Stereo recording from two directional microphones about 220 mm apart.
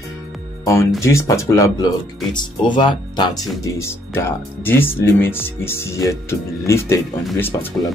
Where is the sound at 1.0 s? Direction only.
15° left (ahead or behind).